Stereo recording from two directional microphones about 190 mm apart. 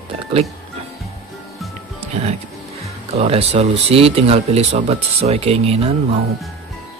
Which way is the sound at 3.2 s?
30° right (ahead or behind).